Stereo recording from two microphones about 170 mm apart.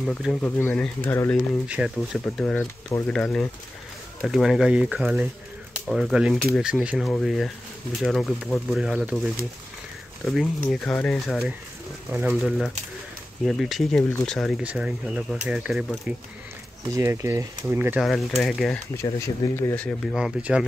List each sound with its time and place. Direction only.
0.0 s speech: centre (ahead or behind)
1.8 s speech: centre (ahead or behind)
10.2 s speech: centre (ahead or behind)
14.6 s speech: 5° right (ahead or behind)
16.9 s speech: 15° right (ahead or behind)
18.0 s speech: centre (ahead or behind)
19.1 s speech: 15° left (ahead or behind)
20.2 s speech: 5° right (ahead or behind)